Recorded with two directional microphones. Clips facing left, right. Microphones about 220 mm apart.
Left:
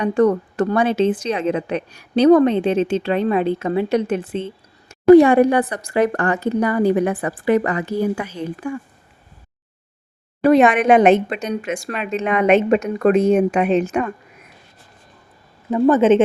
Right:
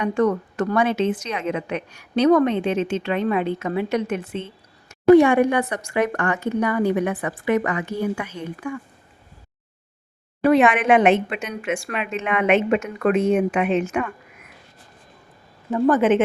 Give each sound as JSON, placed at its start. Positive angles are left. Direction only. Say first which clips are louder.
{"t": 0.0, "sound": "a woman's voice", "louder": "left 4 dB", "side_deg": 35}
{"t": 10.4, "sound": "a woman's voice", "louder": "left 3 dB", "side_deg": 40}
{"t": 15.7, "sound": "a woman's voice", "louder": "left 4 dB", "side_deg": 25}